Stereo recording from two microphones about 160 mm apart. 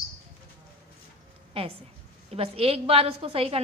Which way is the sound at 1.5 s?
40° right (ahead or behind).